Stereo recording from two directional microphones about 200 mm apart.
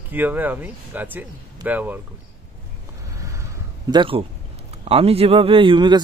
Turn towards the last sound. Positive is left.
turn(degrees=-25)  # may be behind; listen again after turning